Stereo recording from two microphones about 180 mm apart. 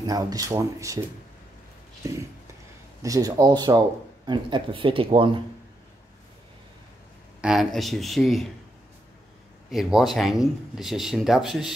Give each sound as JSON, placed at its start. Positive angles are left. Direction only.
{"t": 0.0, "sound": "speech", "side_deg": -20}
{"t": 2.0, "sound": "speech", "side_deg": -15}
{"t": 7.4, "sound": "speech", "side_deg": 0}
{"t": 9.7, "sound": "speech", "side_deg": 0}